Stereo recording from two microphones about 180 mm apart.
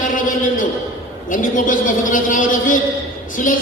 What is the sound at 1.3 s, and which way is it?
A man's voice, 45° left (ahead or behind).